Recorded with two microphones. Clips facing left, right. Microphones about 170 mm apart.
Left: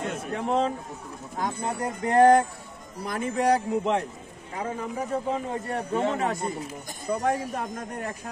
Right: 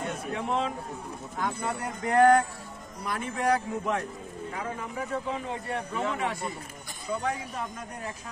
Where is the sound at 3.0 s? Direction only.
45° left (ahead or behind).